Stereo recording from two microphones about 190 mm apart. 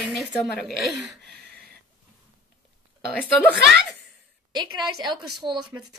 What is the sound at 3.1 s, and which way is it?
Speech, 5° left (ahead or behind).